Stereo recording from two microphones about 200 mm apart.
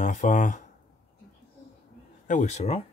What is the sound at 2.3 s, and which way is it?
Speech, 35° left (ahead or behind).